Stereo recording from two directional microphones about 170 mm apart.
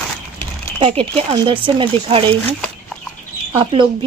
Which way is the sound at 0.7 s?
35° right (ahead or behind).